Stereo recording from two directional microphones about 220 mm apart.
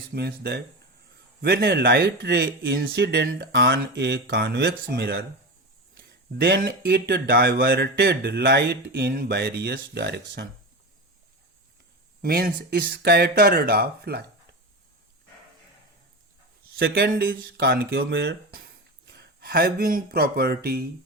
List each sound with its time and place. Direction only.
0.1 s speech: 45° right (ahead or behind)
12.2 s speech: 45° right (ahead or behind)
16.7 s speech: 45° right (ahead or behind)